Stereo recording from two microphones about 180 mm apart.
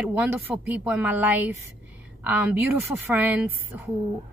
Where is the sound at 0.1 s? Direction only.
10° right (ahead or behind).